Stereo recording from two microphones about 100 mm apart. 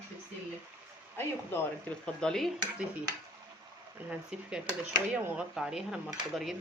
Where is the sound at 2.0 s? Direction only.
5° left (ahead or behind).